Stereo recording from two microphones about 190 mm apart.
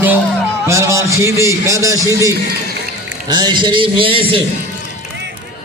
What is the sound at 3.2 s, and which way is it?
A man's voice, 20° right (ahead or behind).